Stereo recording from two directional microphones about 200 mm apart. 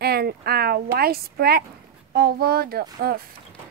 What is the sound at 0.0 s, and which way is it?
A woman's voice, 50° right (ahead or behind).